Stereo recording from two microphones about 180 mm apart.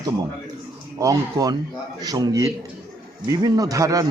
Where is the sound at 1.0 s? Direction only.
20° right (ahead or behind).